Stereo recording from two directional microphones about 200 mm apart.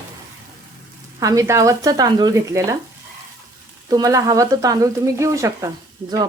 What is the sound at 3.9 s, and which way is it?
Speech, 20° right (ahead or behind).